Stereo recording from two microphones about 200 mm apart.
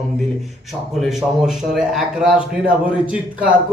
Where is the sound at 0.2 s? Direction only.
Centre (ahead or behind).